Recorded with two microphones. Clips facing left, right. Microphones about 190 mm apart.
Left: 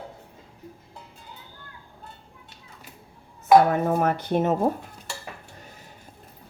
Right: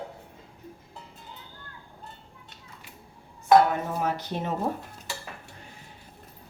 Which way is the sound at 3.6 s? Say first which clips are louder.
Left 6 dB; 55° left (ahead or behind).